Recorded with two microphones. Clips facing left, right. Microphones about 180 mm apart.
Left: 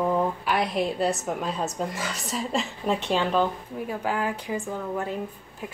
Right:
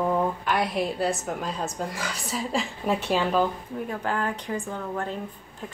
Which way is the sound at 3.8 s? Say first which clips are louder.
Left 1 dB; 5° left (ahead or behind).